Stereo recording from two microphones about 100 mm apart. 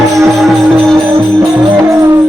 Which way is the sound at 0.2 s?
Centre (ahead or behind).